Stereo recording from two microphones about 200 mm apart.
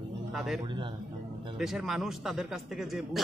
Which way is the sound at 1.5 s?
Centre (ahead or behind).